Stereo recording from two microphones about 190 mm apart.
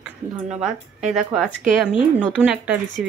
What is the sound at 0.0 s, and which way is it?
Speech, 5° right (ahead or behind).